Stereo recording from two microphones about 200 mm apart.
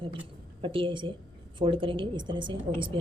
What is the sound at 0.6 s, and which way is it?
A woman's voice, 25° right (ahead or behind).